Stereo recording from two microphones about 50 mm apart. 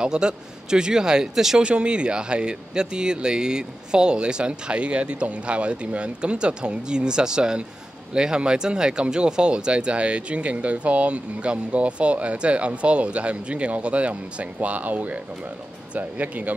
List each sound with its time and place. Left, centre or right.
0.0 s speech: centre
1.6 s speech: centre